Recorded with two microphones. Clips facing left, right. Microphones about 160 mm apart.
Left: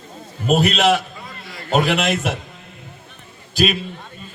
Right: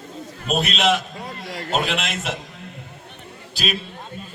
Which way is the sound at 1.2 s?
75° right (ahead or behind).